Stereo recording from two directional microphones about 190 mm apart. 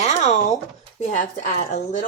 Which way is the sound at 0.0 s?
35° left (ahead or behind).